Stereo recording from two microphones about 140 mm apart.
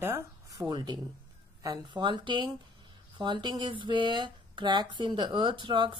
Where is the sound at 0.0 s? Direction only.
15° right (ahead or behind).